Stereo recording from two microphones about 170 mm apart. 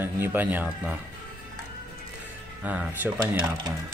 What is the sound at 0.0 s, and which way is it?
Speech, 10° right (ahead or behind).